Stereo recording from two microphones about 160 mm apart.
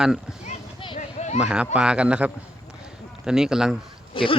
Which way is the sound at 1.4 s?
5° right (ahead or behind).